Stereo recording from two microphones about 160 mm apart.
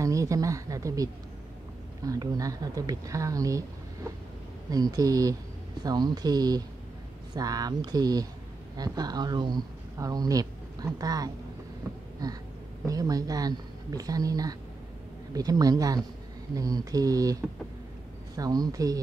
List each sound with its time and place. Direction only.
0.0 s speech: 20° right (ahead or behind)